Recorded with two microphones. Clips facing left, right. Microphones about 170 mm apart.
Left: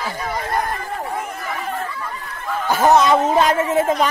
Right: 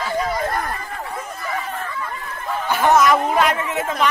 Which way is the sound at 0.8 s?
45° left (ahead or behind).